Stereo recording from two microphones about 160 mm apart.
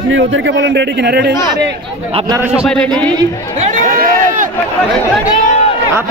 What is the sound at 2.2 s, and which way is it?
Speech, 20° right (ahead or behind).